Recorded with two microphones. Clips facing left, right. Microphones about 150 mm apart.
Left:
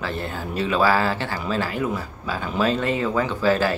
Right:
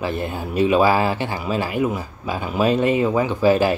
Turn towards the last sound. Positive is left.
turn(degrees=-15)  # may be behind; listen again after turning